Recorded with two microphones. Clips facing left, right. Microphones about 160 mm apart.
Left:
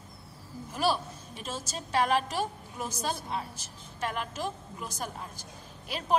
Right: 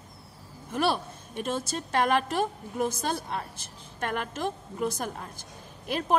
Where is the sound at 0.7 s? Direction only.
55° right (ahead or behind).